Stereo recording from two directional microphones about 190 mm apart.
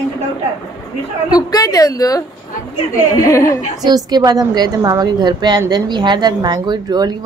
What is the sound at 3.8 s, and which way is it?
A woman's voice, 20° right (ahead or behind).